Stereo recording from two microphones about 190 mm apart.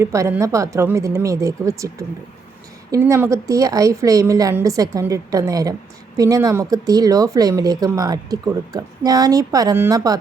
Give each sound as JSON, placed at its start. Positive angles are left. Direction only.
{"t": 0.0, "sound": "a woman's voice", "side_deg": -15}